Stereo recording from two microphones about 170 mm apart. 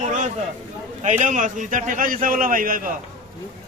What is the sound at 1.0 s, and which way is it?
A man's voice, 45° right (ahead or behind).